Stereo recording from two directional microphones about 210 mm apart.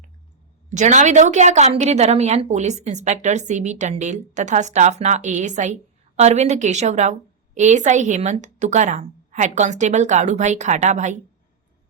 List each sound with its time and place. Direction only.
0.7 s a woman's voice: 35° right (ahead or behind)